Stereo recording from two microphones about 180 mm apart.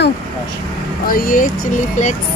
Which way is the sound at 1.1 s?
50° left (ahead or behind).